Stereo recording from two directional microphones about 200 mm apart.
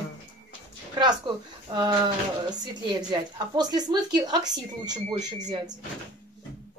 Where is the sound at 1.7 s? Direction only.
20° right (ahead or behind).